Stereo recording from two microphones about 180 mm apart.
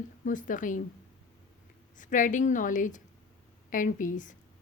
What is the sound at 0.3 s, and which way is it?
Speech, 45° left (ahead or behind).